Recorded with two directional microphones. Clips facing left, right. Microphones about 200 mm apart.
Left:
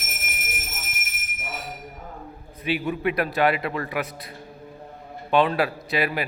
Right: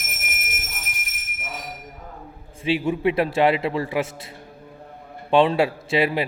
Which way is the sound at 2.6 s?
30° right (ahead or behind).